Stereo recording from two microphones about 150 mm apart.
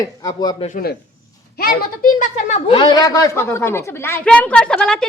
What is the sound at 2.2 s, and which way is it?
Speech, 50° left (ahead or behind).